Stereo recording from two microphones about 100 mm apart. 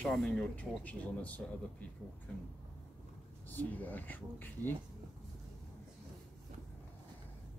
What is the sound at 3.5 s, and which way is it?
Speech, 20° left (ahead or behind).